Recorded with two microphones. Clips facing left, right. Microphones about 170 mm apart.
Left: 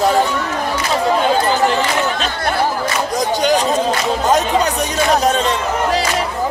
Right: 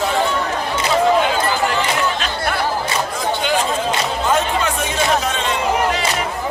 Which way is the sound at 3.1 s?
40° left (ahead or behind).